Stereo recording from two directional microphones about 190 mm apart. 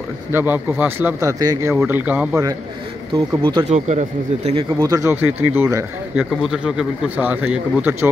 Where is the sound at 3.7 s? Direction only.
35° right (ahead or behind).